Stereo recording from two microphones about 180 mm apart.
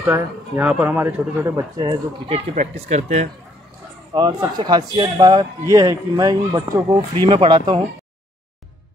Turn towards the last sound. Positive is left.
turn(degrees=-25)  # may be behind; listen again after turning